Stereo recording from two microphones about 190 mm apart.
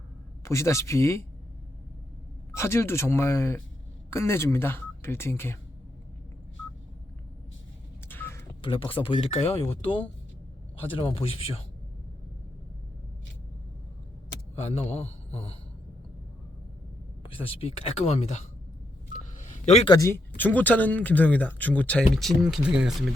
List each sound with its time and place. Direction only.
0.4 s speech: 15° left (ahead or behind)
2.5 s speech: 15° left (ahead or behind)
8.0 s a sound: 10° left (ahead or behind)
8.6 s speech: 30° left (ahead or behind)
10.8 s a man's voice: 30° left (ahead or behind)
14.6 s a man's voice: 35° left (ahead or behind)
17.5 s a man's voice: 30° left (ahead or behind)
19.1 s telephone dialing: 40° left (ahead or behind)
19.9 s speech: 15° left (ahead or behind); by 23.0 s 5° right (ahead or behind)